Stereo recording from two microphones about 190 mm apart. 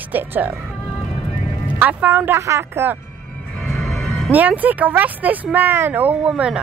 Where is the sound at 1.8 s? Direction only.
10° right (ahead or behind).